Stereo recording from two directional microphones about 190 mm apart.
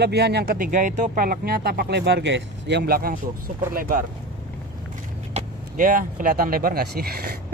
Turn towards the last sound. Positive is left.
turn(degrees=-55)  # may be behind; listen again after turning